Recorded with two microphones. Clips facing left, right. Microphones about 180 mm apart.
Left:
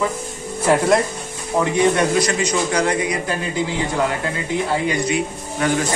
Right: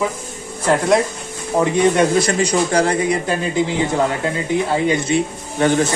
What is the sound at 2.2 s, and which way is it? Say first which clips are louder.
Speech: right 3 dB; 30° right (ahead or behind).